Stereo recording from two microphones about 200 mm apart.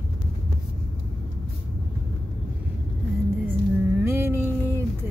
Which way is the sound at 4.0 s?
15° right (ahead or behind).